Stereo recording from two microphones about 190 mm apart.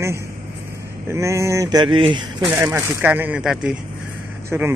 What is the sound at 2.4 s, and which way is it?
Speech, 10° right (ahead or behind).